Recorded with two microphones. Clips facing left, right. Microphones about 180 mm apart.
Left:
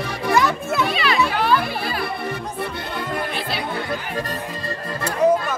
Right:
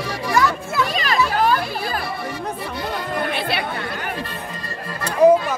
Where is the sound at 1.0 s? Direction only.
40° right (ahead or behind).